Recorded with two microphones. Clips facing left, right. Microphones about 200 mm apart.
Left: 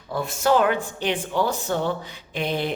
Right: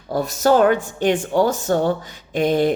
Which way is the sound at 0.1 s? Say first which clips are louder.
Right 4 dB; 40° right (ahead or behind).